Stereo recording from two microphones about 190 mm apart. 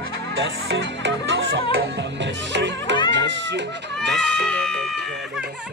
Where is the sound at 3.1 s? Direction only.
70° right (ahead or behind).